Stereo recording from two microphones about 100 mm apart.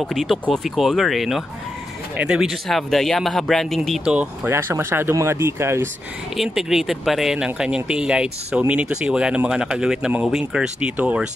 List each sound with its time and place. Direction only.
0.0 s speech: centre (ahead or behind)
4.0 s speech: 10° right (ahead or behind)
4.5 s speech: 25° right (ahead or behind)
6.3 s speech: 5° right (ahead or behind)